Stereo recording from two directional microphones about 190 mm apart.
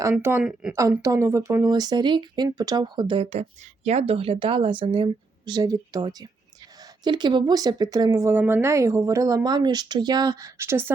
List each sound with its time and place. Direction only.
0.0 s a woman's voice: 15° right (ahead or behind)